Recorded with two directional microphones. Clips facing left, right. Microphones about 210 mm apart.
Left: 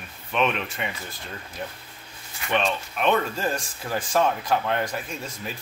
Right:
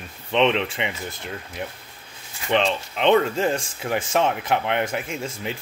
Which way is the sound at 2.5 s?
25° right (ahead or behind).